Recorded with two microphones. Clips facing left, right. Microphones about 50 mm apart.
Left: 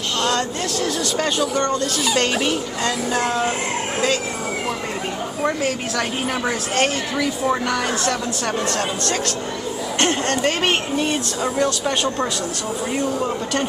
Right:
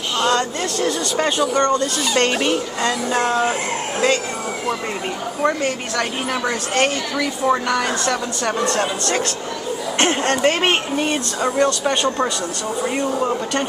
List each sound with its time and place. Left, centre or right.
0.2 s a sound: centre
1.1 s a woman's voice: centre
3.2 s speech: right
5.6 s a woman's voice: centre
9.9 s speech: centre